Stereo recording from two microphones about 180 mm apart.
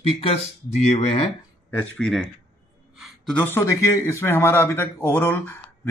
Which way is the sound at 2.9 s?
5° right (ahead or behind).